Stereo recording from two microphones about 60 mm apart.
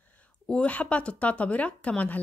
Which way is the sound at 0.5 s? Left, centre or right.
Left.